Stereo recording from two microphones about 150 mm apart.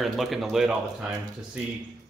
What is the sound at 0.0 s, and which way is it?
Speech, centre (ahead or behind).